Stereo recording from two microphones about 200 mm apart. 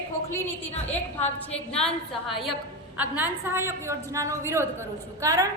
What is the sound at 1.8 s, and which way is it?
A woman's voice, centre (ahead or behind).